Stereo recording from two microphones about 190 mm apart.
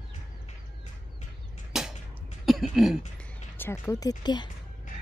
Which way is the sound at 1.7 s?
5° right (ahead or behind).